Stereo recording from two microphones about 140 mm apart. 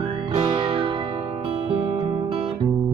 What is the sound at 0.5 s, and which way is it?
Music, 40° right (ahead or behind).